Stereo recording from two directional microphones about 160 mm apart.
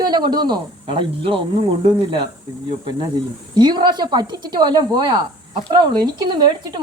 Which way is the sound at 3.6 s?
25° right (ahead or behind).